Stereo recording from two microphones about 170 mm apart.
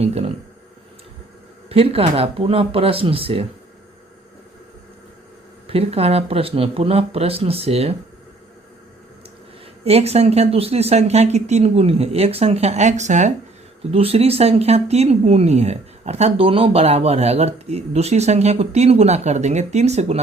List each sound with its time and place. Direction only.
0.0 s speech: 40° right (ahead or behind)
1.7 s speech: 35° right (ahead or behind)
5.6 s speech: 35° right (ahead or behind)
9.8 s speech: 35° right (ahead or behind)